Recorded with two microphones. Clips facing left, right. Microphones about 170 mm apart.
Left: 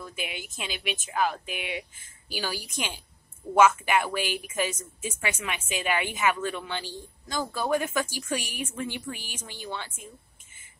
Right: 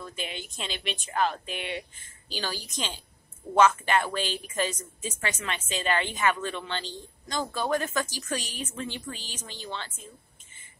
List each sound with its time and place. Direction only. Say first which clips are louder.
0.0 s a woman's voice: even; 10° left (ahead or behind)